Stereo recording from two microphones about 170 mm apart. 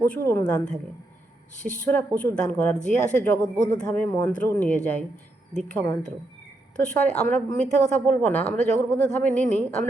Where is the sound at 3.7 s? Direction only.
10° left (ahead or behind).